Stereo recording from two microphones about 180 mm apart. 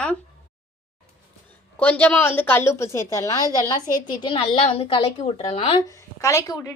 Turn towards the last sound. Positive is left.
turn(degrees=15)  # may be behind; listen again after turning